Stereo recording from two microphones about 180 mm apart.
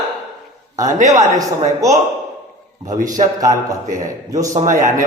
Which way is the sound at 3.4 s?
20° right (ahead or behind).